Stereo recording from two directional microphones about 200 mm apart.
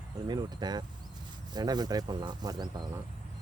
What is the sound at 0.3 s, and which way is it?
Speech, 20° right (ahead or behind).